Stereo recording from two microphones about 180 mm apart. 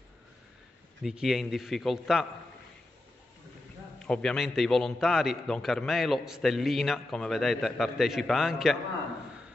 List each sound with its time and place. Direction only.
1.0 s a man's voice: centre (ahead or behind)
4.0 s a man's voice: 5° left (ahead or behind)